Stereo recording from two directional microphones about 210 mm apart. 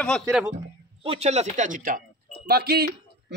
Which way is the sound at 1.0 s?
30° right (ahead or behind).